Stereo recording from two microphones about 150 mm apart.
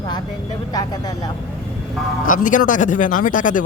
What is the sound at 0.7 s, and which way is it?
Speech, 25° left (ahead or behind).